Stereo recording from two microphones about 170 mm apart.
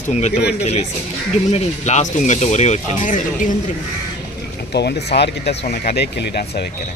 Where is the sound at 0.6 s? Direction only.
40° left (ahead or behind).